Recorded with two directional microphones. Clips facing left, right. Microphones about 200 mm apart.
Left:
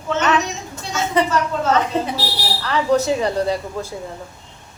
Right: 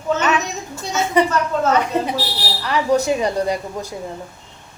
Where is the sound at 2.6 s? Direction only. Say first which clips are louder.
Even; 15° right (ahead or behind).